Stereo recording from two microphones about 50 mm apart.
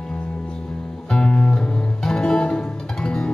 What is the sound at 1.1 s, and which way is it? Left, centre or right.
Music, centre.